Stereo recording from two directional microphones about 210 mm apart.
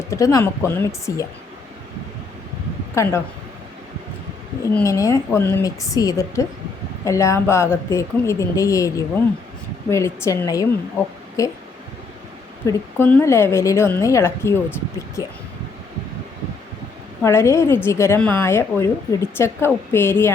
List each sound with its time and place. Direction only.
0.1 s speech: 15° left (ahead or behind)
2.9 s speech: 15° left (ahead or behind)
4.6 s speech: 15° left (ahead or behind)
12.6 s speech: 10° left (ahead or behind)
17.2 s speech: 15° left (ahead or behind)